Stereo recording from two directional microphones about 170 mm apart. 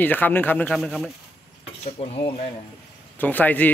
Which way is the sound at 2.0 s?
35° left (ahead or behind).